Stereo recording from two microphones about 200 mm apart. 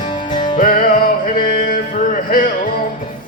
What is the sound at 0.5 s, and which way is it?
Music, 45° left (ahead or behind).